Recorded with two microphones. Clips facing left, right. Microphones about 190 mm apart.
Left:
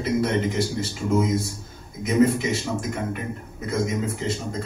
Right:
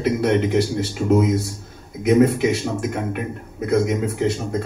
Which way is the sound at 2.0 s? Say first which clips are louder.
Right 4 dB; 65° right (ahead or behind).